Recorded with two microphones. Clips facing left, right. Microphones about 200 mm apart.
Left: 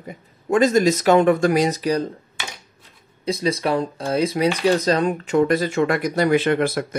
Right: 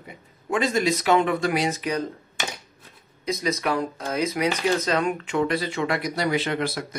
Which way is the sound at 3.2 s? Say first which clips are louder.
Left 4 dB; 30° left (ahead or behind).